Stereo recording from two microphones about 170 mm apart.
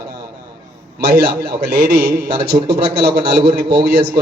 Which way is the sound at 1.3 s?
70° right (ahead or behind).